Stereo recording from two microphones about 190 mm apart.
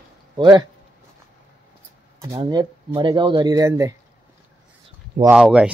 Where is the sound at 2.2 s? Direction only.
20° right (ahead or behind).